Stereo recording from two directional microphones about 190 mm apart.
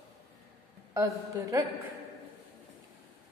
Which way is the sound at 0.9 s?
15° right (ahead or behind).